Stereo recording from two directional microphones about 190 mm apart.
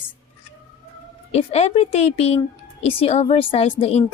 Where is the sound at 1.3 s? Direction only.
35° left (ahead or behind).